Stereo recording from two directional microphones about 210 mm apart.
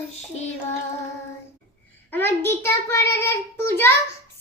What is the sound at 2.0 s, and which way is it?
A child's voice, 10° left (ahead or behind).